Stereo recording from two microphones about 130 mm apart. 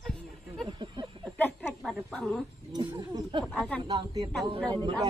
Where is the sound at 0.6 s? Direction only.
35° right (ahead or behind).